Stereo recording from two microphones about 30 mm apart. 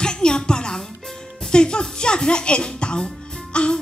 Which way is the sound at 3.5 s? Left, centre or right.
Left.